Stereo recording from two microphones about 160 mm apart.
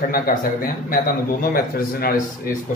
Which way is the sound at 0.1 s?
60° left (ahead or behind).